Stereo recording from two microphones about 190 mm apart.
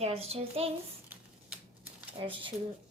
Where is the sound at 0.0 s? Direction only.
30° right (ahead or behind).